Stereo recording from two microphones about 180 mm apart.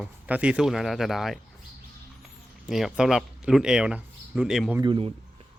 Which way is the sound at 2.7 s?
Centre (ahead or behind).